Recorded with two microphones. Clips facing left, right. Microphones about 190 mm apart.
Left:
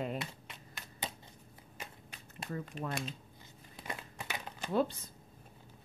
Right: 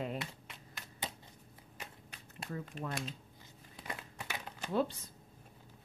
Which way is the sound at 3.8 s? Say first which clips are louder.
Left 1 dB; 25° left (ahead or behind).